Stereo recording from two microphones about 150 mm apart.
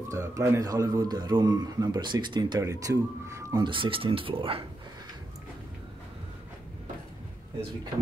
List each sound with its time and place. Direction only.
0.1 s speech: 20° right (ahead or behind)
3.6 s speech: 35° right (ahead or behind)